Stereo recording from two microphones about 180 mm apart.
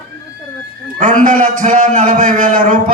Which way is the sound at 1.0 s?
45° right (ahead or behind).